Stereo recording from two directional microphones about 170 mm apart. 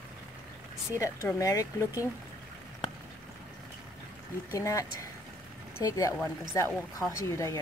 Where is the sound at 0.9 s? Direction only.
20° left (ahead or behind).